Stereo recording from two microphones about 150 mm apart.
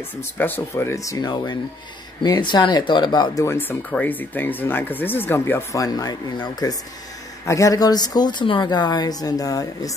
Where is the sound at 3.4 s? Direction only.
15° left (ahead or behind).